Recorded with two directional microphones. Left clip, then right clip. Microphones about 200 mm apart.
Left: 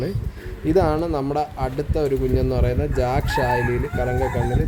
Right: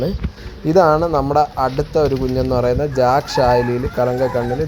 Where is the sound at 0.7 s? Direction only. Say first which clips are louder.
Right 7 dB; 15° right (ahead or behind).